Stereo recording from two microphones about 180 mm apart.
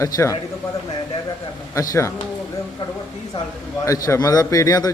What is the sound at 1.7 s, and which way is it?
Speech, 20° left (ahead or behind).